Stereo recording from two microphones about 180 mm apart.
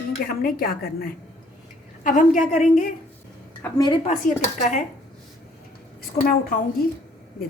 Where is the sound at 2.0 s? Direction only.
45° left (ahead or behind).